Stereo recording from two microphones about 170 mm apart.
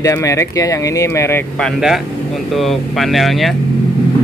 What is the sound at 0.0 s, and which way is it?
Speech, 20° left (ahead or behind).